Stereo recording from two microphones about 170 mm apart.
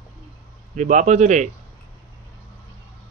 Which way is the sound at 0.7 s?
45° right (ahead or behind).